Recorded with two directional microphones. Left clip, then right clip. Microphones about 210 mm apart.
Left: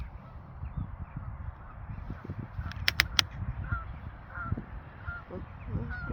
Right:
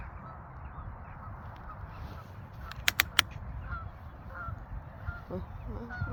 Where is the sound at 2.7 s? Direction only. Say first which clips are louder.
Left 1 dB; 35° right (ahead or behind).